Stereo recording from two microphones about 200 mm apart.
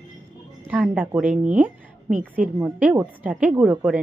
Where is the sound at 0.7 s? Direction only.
5° right (ahead or behind).